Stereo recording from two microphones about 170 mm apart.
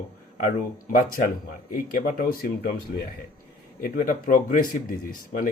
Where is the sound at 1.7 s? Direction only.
55° left (ahead or behind).